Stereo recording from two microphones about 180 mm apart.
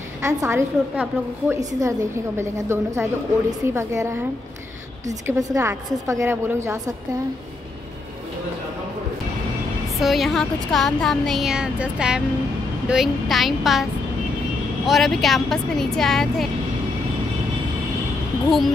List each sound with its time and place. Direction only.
0.2 s a woman's voice: 15° right (ahead or behind)
9.9 s speech: centre (ahead or behind)
14.9 s speech: centre (ahead or behind)